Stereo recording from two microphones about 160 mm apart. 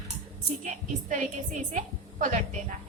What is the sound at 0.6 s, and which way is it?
Music, 50° right (ahead or behind).